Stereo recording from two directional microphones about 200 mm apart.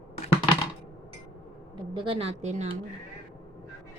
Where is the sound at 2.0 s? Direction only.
25° right (ahead or behind).